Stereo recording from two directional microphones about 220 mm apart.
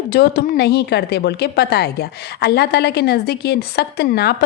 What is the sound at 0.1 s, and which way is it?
A woman's voice, 45° left (ahead or behind).